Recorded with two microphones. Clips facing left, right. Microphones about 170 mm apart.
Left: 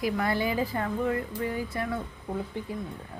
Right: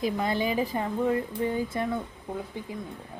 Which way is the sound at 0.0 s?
20° right (ahead or behind).